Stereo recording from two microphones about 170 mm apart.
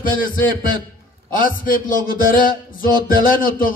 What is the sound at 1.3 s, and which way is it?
A man's voice, 55° left (ahead or behind).